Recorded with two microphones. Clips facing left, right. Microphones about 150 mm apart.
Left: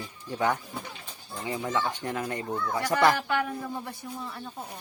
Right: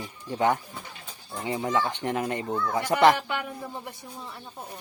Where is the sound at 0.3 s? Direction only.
20° right (ahead or behind).